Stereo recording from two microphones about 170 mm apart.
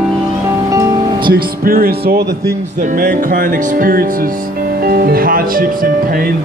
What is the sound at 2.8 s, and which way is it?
Speech, 50° right (ahead or behind).